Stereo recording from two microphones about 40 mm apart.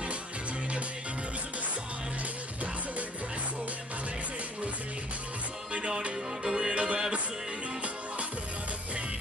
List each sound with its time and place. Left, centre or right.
5.7 s music: right
6.4 s music: centre
6.7 s music: right